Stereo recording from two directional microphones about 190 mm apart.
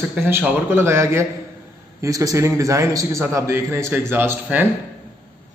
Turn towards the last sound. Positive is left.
turn(degrees=-10)  # may be behind; listen again after turning